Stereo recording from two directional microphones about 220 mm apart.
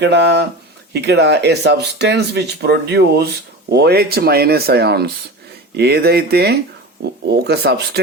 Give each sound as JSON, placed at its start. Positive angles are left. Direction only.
{"t": 0.0, "sound": "speech", "side_deg": -50}